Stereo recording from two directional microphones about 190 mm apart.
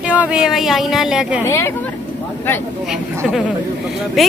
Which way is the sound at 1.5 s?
15° left (ahead or behind).